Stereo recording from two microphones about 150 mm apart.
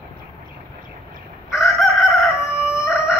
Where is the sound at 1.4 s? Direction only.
Centre (ahead or behind).